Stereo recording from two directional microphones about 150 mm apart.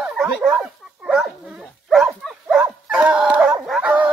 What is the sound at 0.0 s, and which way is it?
Dog, 5° right (ahead or behind).